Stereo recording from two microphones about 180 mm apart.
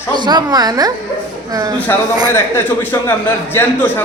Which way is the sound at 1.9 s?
15° left (ahead or behind).